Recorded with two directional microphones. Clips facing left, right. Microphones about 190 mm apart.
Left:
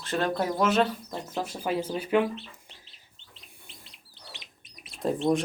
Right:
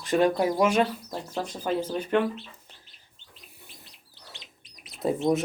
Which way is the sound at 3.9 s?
20° left (ahead or behind).